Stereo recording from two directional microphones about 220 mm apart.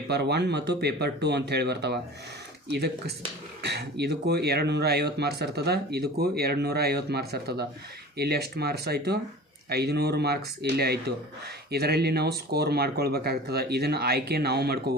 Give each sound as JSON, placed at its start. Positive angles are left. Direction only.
{"t": 0.1, "sound": "speech", "side_deg": -50}